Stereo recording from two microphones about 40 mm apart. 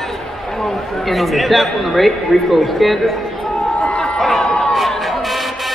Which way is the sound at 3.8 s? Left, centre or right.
Left.